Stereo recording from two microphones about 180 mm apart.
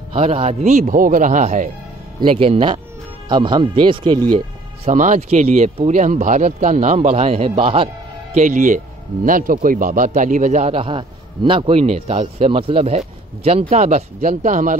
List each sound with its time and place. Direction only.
0.1 s a man's voice: 35° right (ahead or behind)
2.1 s a man's voice: 30° right (ahead or behind)
4.8 s a man's voice: 45° right (ahead or behind)
8.4 s a man's voice: 45° right (ahead or behind)